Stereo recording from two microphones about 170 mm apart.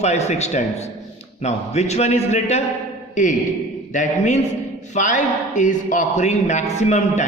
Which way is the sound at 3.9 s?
45° left (ahead or behind).